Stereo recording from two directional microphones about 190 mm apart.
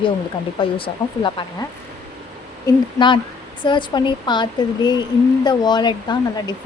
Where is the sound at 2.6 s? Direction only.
25° left (ahead or behind).